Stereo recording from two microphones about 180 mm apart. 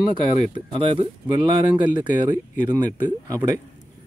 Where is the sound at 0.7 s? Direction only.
25° right (ahead or behind).